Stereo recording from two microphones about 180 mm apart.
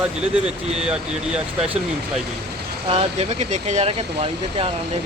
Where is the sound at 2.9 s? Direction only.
35° right (ahead or behind).